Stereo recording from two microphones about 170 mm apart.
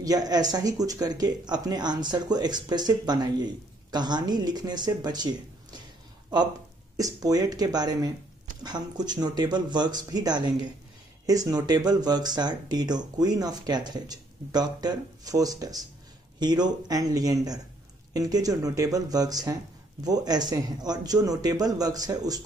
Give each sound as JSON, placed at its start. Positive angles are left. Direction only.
{"t": 0.0, "sound": "speech", "side_deg": -20}
{"t": 7.0, "sound": "speech", "side_deg": -20}